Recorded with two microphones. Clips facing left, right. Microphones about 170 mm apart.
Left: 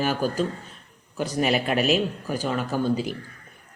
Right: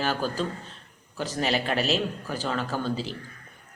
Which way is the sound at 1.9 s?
10° left (ahead or behind).